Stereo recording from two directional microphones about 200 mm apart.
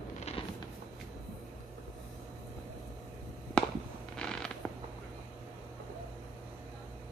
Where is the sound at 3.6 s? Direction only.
5° left (ahead or behind).